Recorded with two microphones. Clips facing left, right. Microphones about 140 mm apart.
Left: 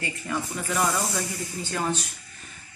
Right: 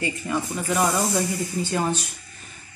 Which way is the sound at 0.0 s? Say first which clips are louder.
Right 4 dB; 15° right (ahead or behind).